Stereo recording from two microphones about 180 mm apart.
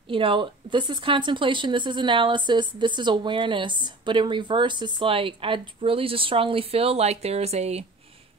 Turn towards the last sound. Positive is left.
turn(degrees=-35)  # may be behind; listen again after turning